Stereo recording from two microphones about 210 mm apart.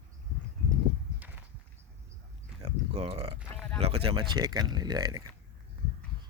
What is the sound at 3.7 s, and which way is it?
Speech, 25° right (ahead or behind).